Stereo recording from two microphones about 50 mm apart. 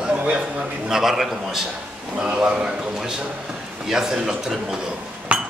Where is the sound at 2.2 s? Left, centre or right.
Centre.